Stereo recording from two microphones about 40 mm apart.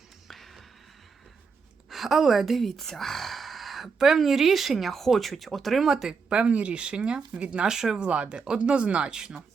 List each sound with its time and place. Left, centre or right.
0.3 s a sound: centre
1.9 s a woman's voice: centre
5.9 s speech: centre
6.2 s speech: right
7.7 s speech: centre
7.9 s speech: right